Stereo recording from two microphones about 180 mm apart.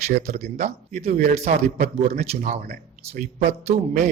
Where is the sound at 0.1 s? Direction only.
40° right (ahead or behind).